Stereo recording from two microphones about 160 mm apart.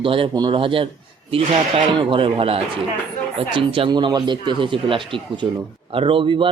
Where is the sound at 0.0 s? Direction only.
35° right (ahead or behind).